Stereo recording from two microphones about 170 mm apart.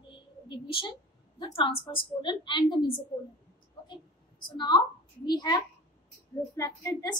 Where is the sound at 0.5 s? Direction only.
30° left (ahead or behind).